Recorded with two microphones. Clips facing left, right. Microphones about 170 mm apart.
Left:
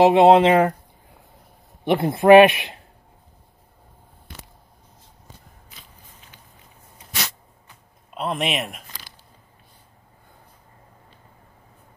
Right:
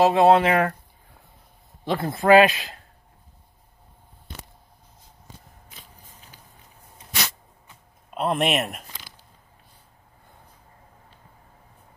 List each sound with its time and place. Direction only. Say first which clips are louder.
0.0 s speech: left 4 dB; 20° left (ahead or behind)
1.9 s speech: left 5 dB; 25° left (ahead or behind)
8.1 s speech: right 2 dB; centre (ahead or behind)